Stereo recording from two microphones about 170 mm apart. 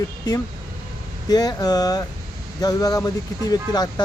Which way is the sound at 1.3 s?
25° left (ahead or behind).